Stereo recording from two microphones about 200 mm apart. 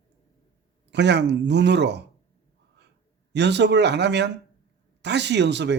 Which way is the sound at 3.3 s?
60° right (ahead or behind).